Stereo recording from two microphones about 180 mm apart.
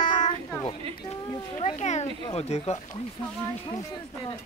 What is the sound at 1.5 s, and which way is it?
Speech, 40° left (ahead or behind).